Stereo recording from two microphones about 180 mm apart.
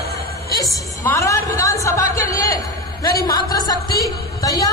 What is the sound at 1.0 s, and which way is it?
A man's voice, 15° left (ahead or behind).